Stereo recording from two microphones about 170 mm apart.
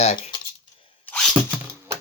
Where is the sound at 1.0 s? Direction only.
5° left (ahead or behind).